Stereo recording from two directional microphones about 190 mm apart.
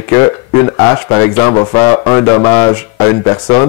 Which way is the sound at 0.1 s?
15° left (ahead or behind).